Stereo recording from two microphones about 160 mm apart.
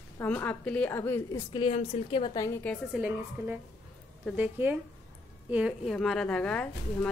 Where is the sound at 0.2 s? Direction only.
10° left (ahead or behind).